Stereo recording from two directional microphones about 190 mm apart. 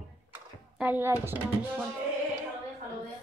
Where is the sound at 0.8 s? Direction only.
10° right (ahead or behind).